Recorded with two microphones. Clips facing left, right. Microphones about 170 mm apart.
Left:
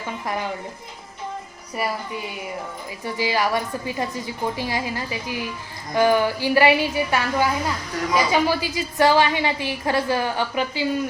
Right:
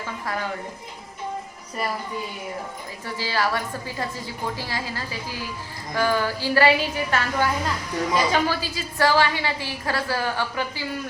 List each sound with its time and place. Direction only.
3.0 s a woman's voice: 15° left (ahead or behind)